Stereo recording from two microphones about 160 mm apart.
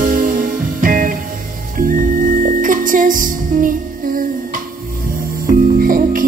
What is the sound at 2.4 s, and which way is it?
Music, 55° right (ahead or behind).